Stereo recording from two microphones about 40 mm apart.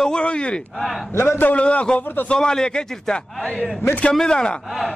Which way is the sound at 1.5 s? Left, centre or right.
Left.